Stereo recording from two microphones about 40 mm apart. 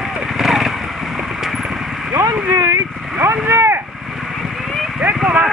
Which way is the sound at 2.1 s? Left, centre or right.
Right.